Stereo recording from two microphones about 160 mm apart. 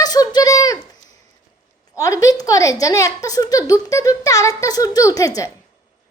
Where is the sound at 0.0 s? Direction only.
25° left (ahead or behind).